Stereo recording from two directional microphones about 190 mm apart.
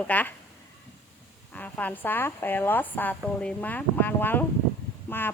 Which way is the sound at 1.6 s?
10° left (ahead or behind).